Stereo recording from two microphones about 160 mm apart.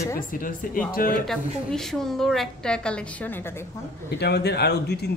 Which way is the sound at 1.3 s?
Centre (ahead or behind).